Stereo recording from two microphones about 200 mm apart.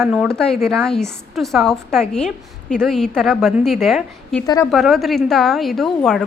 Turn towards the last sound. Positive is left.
turn(degrees=0)  # may be behind; listen again after turning